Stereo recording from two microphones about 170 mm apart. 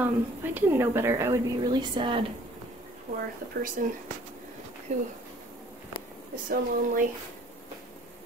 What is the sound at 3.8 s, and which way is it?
Speech, 50° right (ahead or behind).